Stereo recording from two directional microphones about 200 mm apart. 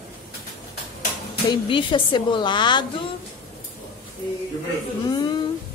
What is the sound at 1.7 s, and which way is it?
Speech, 25° left (ahead or behind).